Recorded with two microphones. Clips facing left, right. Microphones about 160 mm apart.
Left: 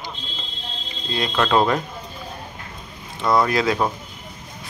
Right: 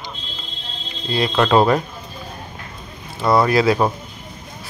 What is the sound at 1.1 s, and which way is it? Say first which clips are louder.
Speech: right 4 dB; 5° right (ahead or behind).